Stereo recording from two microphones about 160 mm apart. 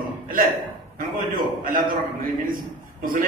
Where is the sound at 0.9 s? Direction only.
60° right (ahead or behind).